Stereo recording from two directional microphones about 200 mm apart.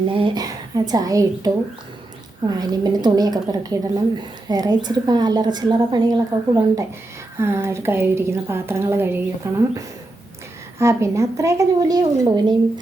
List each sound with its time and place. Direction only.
0.1 s a woman's voice: 25° right (ahead or behind)
2.5 s a woman's voice: 20° right (ahead or behind)
7.3 s a woman's voice: 15° right (ahead or behind)